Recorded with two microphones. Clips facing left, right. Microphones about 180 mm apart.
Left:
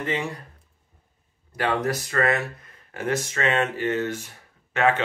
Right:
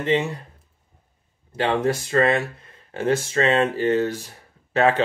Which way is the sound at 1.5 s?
25° right (ahead or behind).